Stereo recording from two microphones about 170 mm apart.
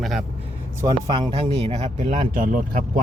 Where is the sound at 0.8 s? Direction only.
25° right (ahead or behind); by 2.6 s 50° right (ahead or behind).